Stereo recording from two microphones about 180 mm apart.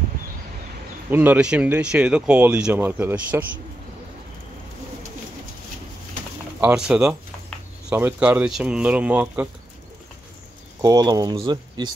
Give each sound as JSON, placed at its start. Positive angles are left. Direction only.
{"t": 1.1, "sound": "speech", "side_deg": -10}
{"t": 6.6, "sound": "speech", "side_deg": -5}
{"t": 10.8, "sound": "speech", "side_deg": -20}